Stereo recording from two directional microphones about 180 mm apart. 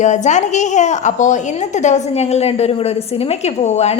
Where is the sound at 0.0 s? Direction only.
40° left (ahead or behind).